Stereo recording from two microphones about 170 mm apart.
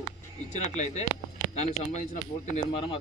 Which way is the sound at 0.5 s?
45° left (ahead or behind).